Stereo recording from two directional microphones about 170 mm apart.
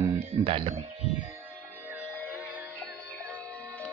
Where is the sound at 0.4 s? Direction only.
30° right (ahead or behind).